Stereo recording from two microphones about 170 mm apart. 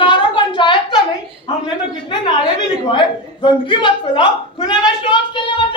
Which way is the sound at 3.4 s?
30° left (ahead or behind).